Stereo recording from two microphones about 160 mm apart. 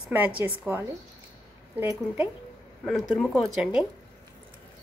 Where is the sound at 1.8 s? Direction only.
15° right (ahead or behind).